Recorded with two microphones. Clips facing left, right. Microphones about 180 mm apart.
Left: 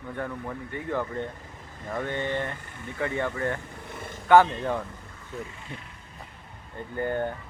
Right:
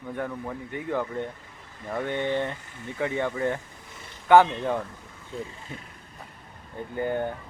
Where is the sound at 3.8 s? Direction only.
55° left (ahead or behind).